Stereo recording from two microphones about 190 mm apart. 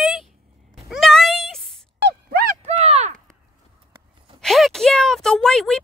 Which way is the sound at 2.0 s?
55° right (ahead or behind).